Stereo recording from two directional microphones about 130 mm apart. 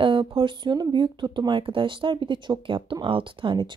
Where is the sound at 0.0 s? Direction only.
40° right (ahead or behind).